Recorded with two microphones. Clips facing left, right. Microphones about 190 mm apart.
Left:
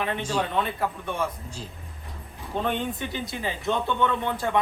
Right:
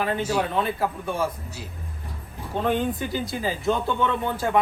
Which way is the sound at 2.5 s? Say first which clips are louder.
Right 2 dB; centre (ahead or behind).